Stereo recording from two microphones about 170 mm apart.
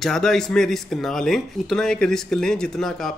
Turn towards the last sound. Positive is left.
turn(degrees=5)  # may be behind; listen again after turning